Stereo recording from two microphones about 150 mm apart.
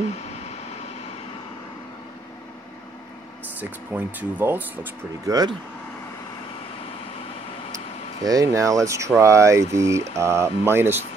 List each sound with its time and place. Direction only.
3.5 s speech: 10° right (ahead or behind)
5.2 s speech: 25° right (ahead or behind)
8.2 s speech: 25° right (ahead or behind)